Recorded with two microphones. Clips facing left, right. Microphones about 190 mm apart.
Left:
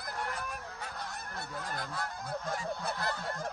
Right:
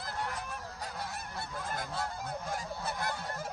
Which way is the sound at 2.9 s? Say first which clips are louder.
Left 1 dB; 15° right (ahead or behind).